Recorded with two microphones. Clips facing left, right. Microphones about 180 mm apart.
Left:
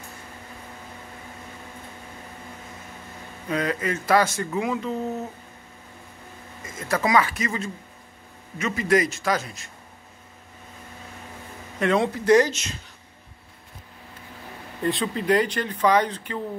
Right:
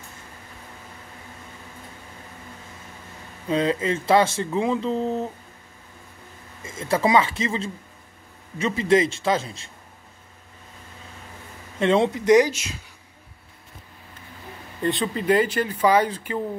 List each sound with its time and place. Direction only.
3.4 s speech: 25° right (ahead or behind)
6.6 s speech: 25° right (ahead or behind)
11.8 s speech: 25° right (ahead or behind); by 12.7 s 10° right (ahead or behind)
14.8 s speech: centre (ahead or behind)